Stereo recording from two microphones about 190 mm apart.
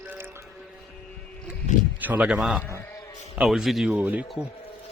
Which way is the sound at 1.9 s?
10° right (ahead or behind).